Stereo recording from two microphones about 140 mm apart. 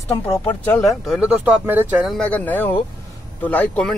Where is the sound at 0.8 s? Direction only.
Centre (ahead or behind).